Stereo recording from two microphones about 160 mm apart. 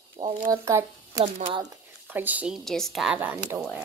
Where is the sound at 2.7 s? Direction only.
Centre (ahead or behind).